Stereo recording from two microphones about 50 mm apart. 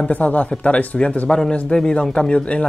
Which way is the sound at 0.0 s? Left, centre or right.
Left.